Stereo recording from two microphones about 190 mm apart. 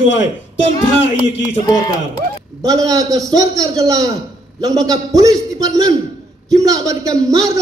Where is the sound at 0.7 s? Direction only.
20° left (ahead or behind).